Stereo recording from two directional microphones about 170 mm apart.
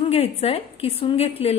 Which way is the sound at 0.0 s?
35° left (ahead or behind).